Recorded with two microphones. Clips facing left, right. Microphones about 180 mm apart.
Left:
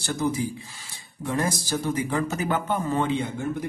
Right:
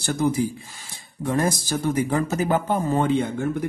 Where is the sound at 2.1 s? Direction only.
40° right (ahead or behind).